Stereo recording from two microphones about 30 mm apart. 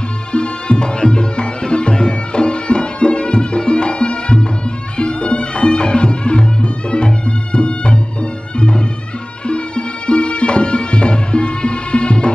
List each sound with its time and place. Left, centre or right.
0.3 s music: left